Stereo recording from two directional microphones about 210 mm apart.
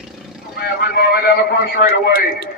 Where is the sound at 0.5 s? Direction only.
50° left (ahead or behind).